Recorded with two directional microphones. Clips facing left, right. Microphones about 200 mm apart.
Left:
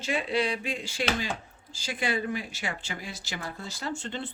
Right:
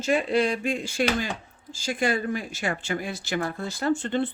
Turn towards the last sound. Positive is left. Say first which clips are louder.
# right 10 dB
turn(degrees=-55)  # may be behind; listen again after turning